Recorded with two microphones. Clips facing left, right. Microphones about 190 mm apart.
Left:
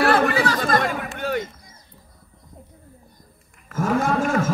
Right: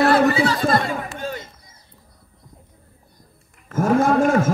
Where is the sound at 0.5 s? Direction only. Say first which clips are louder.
Right 1 dB; 45° left (ahead or behind).